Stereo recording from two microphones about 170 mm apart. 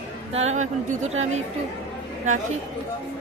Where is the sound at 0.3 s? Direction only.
40° right (ahead or behind).